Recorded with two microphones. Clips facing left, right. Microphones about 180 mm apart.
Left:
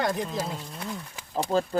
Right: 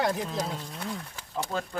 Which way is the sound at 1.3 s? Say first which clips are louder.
Left 7 dB; 30° left (ahead or behind).